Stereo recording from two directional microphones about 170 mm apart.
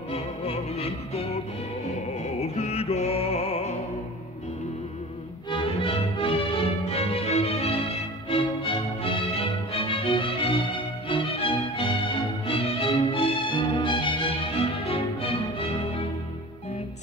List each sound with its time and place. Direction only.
0.1 s music: 35° left (ahead or behind)
2.4 s music: 35° left (ahead or behind)
5.5 s music: 30° left (ahead or behind)